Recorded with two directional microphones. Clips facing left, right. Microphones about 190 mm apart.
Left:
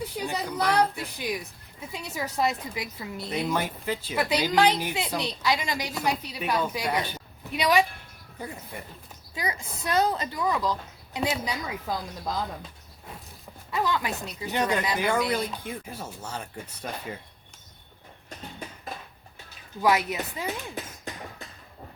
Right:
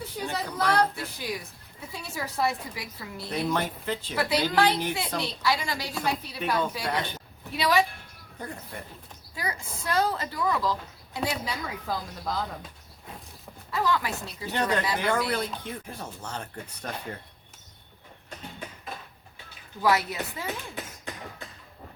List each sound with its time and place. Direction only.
0.3 s a woman's voice: 15° left (ahead or behind)
9.3 s speech: 20° left (ahead or behind)
13.7 s a woman's voice: 20° left (ahead or behind)
19.8 s a woman's voice: 20° left (ahead or behind)